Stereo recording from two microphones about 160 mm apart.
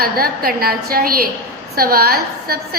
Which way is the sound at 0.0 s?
70° right (ahead or behind).